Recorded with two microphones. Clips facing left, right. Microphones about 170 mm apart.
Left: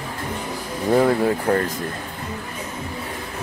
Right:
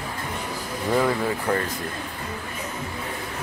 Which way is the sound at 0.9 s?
40° left (ahead or behind).